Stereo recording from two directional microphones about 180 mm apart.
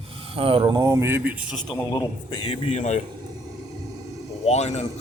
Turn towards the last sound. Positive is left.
turn(degrees=35)  # may be behind; listen again after turning